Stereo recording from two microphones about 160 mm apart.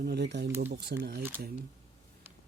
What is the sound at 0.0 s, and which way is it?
Speech, 90° right.